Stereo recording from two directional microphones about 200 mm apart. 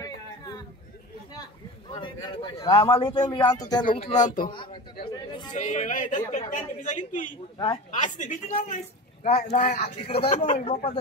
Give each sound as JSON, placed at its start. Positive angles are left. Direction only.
{"t": 2.0, "sound": "a man's voice", "side_deg": 25}
{"t": 7.5, "sound": "a man's voice", "side_deg": 25}
{"t": 7.9, "sound": "a woman's voice", "side_deg": 40}
{"t": 10.0, "sound": "a man's voice", "side_deg": 25}